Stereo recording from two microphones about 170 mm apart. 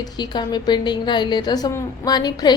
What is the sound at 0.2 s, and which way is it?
Mantra, 25° left (ahead or behind).